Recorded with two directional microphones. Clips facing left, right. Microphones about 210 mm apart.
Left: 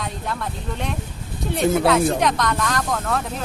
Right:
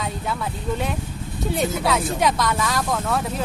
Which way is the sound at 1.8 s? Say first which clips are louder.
Left 3 dB; centre (ahead or behind).